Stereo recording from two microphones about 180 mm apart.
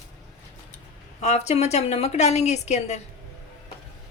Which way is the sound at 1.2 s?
40° left (ahead or behind).